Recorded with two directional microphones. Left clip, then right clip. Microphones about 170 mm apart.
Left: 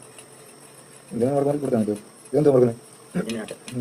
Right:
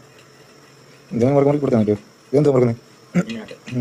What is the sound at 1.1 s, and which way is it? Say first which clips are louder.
Speech: right 6 dB; 30° right (ahead or behind).